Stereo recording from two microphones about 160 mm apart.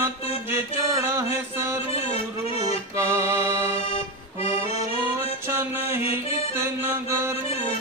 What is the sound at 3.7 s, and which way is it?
Accordion, 40° left (ahead or behind).